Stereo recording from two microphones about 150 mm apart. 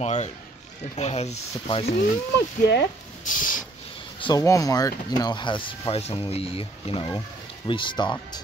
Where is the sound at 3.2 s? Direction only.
60° left (ahead or behind).